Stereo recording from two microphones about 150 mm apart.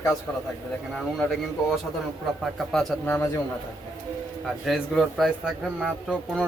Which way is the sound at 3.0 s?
15° left (ahead or behind).